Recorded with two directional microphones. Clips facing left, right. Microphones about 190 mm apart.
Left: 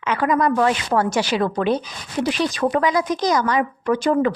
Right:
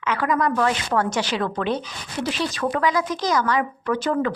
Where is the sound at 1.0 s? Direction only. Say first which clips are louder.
Left 3 dB; 10° left (ahead or behind).